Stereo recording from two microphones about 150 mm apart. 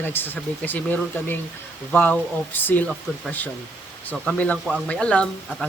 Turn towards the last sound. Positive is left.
turn(degrees=5)  # may be behind; listen again after turning